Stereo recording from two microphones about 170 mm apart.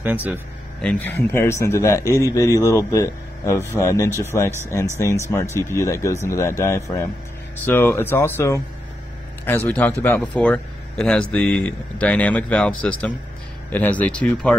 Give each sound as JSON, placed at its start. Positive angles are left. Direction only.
{"t": 0.0, "sound": "speech", "side_deg": -10}
{"t": 0.7, "sound": "speech", "side_deg": 10}
{"t": 2.0, "sound": "speech", "side_deg": -15}
{"t": 2.3, "sound": "speech", "side_deg": 20}